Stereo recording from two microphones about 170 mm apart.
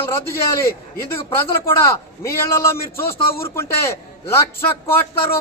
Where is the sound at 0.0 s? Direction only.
15° left (ahead or behind).